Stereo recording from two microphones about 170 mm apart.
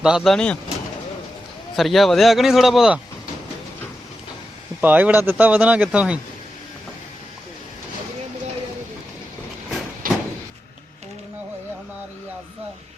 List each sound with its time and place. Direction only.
0.0 s speech: 5° right (ahead or behind)
1.7 s speech: centre (ahead or behind)
4.8 s speech: 10° right (ahead or behind)
10.0 s door: 55° right (ahead or behind)